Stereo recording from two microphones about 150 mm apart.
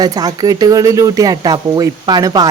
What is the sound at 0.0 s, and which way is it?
Speech, 25° right (ahead or behind).